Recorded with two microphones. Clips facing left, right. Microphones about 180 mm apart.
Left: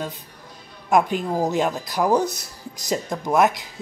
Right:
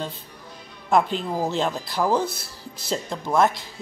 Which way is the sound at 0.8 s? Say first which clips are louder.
Left 2 dB; 10° left (ahead or behind).